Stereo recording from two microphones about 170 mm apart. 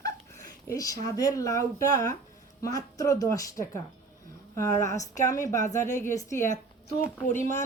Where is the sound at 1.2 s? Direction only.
20° left (ahead or behind).